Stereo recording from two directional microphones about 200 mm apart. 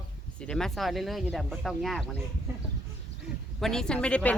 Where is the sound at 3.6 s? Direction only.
Centre (ahead or behind).